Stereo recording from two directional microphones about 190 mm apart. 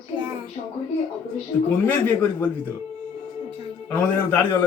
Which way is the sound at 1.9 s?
10° left (ahead or behind).